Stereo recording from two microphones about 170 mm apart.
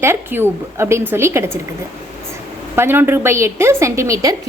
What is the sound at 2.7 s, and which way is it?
A woman's voice, 15° right (ahead or behind).